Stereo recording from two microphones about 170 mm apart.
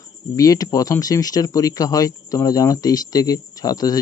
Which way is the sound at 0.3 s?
20° left (ahead or behind).